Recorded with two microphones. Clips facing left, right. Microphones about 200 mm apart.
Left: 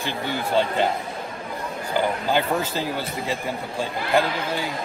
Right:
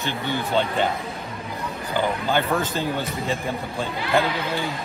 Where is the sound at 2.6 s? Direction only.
10° left (ahead or behind).